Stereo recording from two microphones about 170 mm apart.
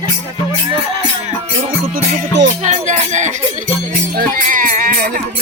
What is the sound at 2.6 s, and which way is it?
Music, 45° right (ahead or behind).